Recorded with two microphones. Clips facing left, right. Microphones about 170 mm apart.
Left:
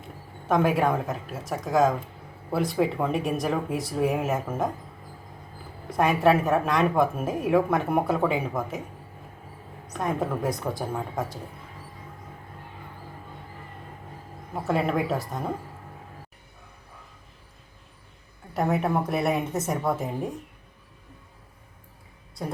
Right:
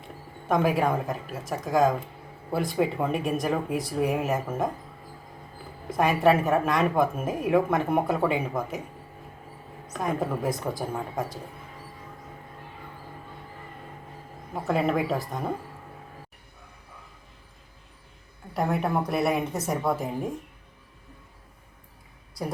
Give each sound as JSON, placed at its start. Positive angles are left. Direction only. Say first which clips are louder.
{"t": 0.4, "sound": "a woman's voice", "louder": "left 1 dB", "side_deg": 0}
{"t": 5.9, "sound": "a woman's voice", "louder": "even", "side_deg": 0}
{"t": 10.0, "sound": "a woman's voice", "louder": "left 1 dB", "side_deg": 0}
{"t": 14.5, "sound": "a woman's voice", "louder": "even", "side_deg": 0}
{"t": 18.5, "sound": "a woman's voice", "louder": "left 1 dB", "side_deg": 0}